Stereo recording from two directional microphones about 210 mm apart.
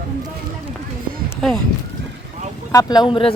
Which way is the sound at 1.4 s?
Centre (ahead or behind).